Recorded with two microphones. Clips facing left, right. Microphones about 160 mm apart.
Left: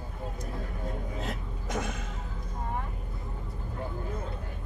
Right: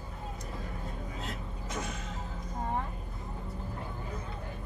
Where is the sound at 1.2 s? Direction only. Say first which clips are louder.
Left 3 dB; 55° left (ahead or behind).